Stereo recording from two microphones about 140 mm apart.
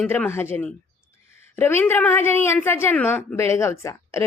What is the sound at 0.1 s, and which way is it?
A woman's voice, 15° left (ahead or behind).